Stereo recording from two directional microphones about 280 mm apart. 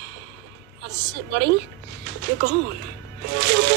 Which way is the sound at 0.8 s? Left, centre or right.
Right.